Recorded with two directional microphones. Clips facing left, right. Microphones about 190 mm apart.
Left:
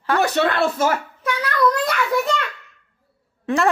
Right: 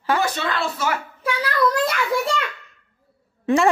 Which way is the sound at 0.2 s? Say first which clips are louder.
Left 5 dB; 65° left (ahead or behind).